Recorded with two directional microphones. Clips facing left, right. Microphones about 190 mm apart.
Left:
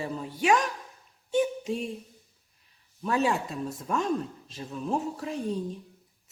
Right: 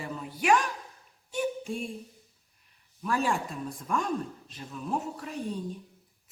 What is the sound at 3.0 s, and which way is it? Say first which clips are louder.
Speech: left 2 dB; 25° left (ahead or behind).